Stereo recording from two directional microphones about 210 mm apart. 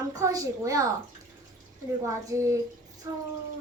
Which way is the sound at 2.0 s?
15° right (ahead or behind).